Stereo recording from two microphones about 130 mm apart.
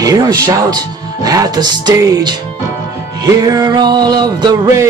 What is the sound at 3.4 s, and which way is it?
Music, 30° right (ahead or behind).